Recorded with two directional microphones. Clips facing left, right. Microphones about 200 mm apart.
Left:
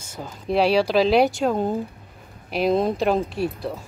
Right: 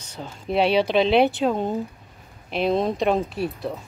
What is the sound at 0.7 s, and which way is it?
Speech, 35° left (ahead or behind).